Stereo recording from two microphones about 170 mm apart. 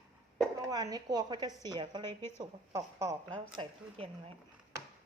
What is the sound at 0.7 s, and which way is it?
A woman's voice, 20° right (ahead or behind).